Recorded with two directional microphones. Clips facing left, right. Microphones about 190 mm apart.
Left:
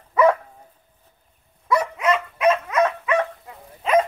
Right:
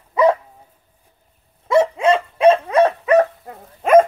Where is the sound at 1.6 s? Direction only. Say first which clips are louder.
Right 6 dB; 25° right (ahead or behind).